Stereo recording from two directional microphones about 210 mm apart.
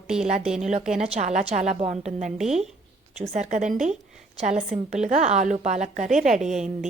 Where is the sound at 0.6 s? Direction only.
30° right (ahead or behind).